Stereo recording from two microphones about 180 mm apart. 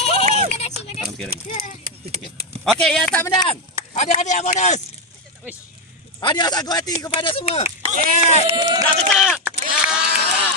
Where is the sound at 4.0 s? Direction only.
40° left (ahead or behind).